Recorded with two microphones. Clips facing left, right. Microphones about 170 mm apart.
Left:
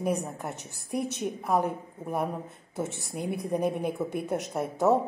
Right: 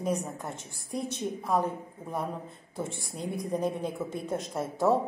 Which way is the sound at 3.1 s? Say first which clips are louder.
Left 3 dB; 60° left (ahead or behind).